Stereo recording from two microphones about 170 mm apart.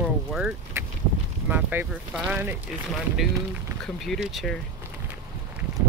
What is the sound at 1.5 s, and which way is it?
Speech, 10° right (ahead or behind).